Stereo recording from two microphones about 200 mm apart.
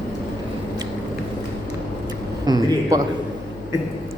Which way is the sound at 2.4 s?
20° right (ahead or behind).